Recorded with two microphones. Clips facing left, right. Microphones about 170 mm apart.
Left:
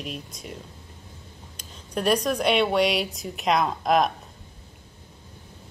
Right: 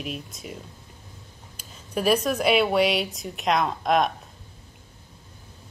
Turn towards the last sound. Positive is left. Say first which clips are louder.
# left 1 dB
turn(degrees=0)  # may be behind; listen again after turning